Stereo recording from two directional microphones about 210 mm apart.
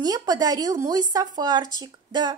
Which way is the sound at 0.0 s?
20° right (ahead or behind).